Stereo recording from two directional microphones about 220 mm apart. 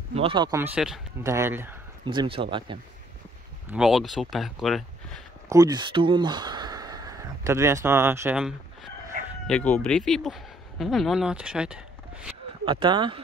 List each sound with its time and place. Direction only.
0.1 s speech: 25° right (ahead or behind)
2.0 s speech: 25° right (ahead or behind)
3.7 s speech: centre (ahead or behind)
5.5 s speech: 15° right (ahead or behind)
9.5 s speech: 5° left (ahead or behind)
12.6 s speech: 20° right (ahead or behind)